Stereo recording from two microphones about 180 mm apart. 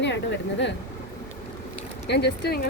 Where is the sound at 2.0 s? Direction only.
65° left (ahead or behind).